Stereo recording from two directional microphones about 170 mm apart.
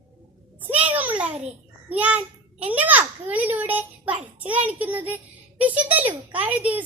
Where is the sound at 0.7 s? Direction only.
10° right (ahead or behind).